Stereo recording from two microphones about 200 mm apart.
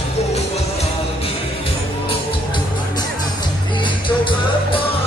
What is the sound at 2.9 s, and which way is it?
Music, 25° left (ahead or behind).